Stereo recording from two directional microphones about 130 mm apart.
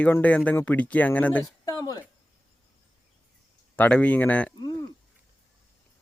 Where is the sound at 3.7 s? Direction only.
10° left (ahead or behind).